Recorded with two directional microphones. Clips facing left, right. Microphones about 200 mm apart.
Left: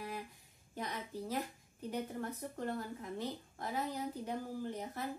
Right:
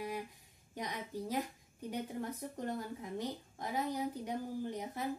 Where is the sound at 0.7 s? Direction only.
15° right (ahead or behind).